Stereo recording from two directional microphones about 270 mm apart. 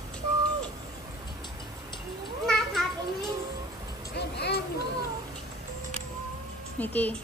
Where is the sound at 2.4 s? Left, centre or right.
Centre.